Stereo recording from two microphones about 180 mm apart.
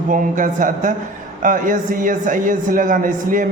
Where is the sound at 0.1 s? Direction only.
45° right (ahead or behind).